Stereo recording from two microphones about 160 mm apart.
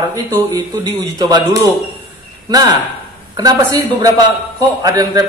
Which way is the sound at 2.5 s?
20° right (ahead or behind).